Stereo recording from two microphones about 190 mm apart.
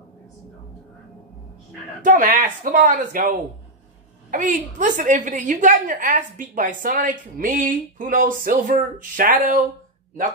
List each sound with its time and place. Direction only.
2.0 s a woman's voice: 45° right (ahead or behind)
4.3 s a woman's voice: 45° right (ahead or behind)